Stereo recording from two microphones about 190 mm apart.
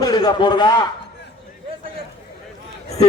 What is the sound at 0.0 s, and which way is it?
Speech, 20° left (ahead or behind).